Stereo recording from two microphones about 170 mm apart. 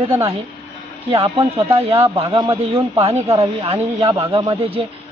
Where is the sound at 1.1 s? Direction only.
35° right (ahead or behind).